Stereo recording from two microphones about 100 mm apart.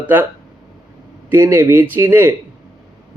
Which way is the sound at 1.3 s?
25° right (ahead or behind).